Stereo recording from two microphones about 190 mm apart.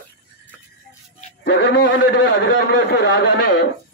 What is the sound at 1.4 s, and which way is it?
A man's voice, 70° left (ahead or behind).